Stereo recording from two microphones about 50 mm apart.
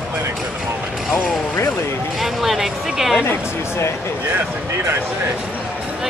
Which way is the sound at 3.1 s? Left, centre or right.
Left.